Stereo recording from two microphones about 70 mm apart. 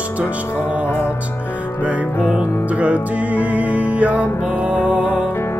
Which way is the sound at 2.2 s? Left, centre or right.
Centre.